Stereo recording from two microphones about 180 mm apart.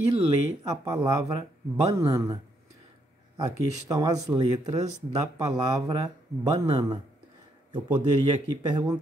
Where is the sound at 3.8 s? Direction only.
20° right (ahead or behind).